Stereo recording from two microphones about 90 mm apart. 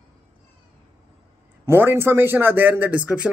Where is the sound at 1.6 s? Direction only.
30° right (ahead or behind).